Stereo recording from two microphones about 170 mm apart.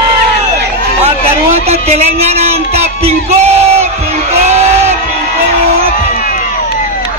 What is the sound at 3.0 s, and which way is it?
Crowd, 40° right (ahead or behind).